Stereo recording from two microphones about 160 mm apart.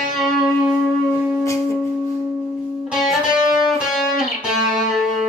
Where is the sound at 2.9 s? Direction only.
5° right (ahead or behind).